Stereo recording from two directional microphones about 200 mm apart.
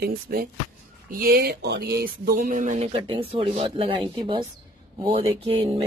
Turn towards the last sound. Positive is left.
turn(degrees=-30)  # may be behind; listen again after turning